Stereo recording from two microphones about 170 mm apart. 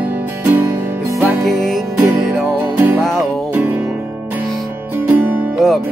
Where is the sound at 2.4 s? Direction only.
10° right (ahead or behind).